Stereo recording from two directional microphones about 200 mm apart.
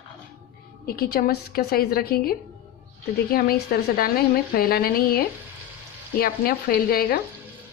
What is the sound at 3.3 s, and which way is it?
A woman's voice, 50° left (ahead or behind).